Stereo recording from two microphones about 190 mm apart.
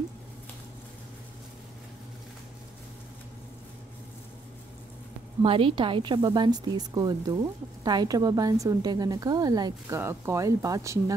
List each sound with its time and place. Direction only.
5.4 s a woman's voice: 30° right (ahead or behind)